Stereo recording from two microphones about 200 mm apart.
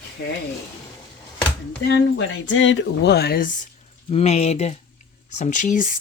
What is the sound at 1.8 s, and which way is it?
Speech, 60° left (ahead or behind).